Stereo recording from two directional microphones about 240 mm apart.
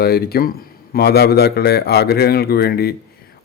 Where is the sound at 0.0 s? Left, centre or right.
Left.